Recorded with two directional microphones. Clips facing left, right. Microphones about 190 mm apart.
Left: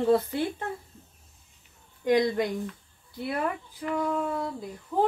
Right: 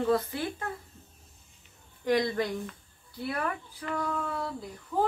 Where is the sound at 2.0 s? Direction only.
20° left (ahead or behind).